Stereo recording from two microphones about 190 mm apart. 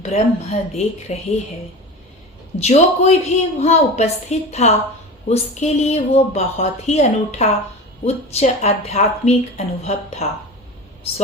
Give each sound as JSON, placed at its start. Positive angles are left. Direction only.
{"t": 0.0, "sound": "a woman's voice", "side_deg": 35}
{"t": 2.6, "sound": "a woman's voice", "side_deg": 35}